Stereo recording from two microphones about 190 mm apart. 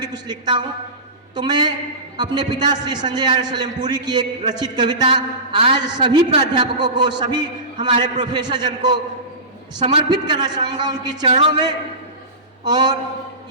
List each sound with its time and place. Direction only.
0.0 s a man's voice: 20° right (ahead or behind)